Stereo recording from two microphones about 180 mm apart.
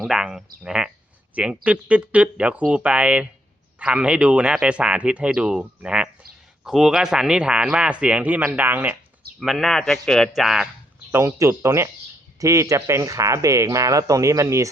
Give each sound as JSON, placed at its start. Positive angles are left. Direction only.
{"t": 0.0, "sound": "speech", "side_deg": -5}
{"t": 11.1, "sound": "speech", "side_deg": -15}